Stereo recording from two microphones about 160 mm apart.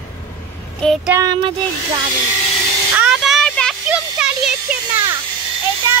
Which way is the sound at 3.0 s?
5° right (ahead or behind).